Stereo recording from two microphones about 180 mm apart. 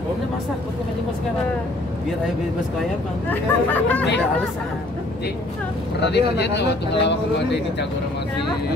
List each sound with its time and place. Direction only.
3.3 s speech: 10° left (ahead or behind)
5.9 s speech: 70° left (ahead or behind)